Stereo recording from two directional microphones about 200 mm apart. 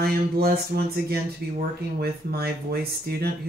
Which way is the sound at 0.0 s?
50° right (ahead or behind).